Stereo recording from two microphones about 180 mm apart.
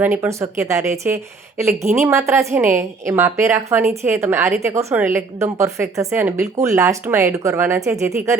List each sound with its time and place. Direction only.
0.0 s a woman's voice: 10° right (ahead or behind)